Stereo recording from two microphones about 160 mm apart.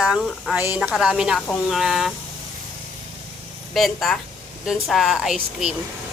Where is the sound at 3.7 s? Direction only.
Centre (ahead or behind).